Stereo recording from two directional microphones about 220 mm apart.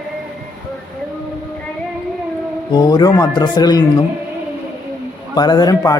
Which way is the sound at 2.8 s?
20° left (ahead or behind).